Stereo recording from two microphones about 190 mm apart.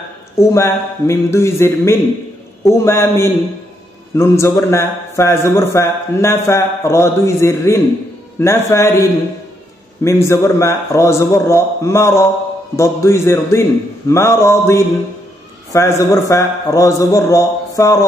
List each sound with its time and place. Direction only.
0.4 s a man's voice: 15° left (ahead or behind)
10.0 s a man's voice: 15° left (ahead or behind)